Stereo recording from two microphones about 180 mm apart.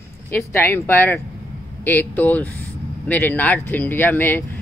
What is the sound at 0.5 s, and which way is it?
A woman's voice, 10° left (ahead or behind).